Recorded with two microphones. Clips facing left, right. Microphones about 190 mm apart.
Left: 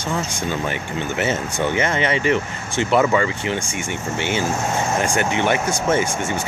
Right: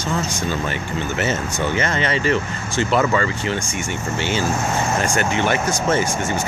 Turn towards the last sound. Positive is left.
turn(degrees=10)  # may be behind; listen again after turning